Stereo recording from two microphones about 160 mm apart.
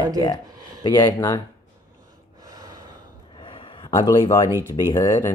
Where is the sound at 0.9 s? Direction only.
15° left (ahead or behind).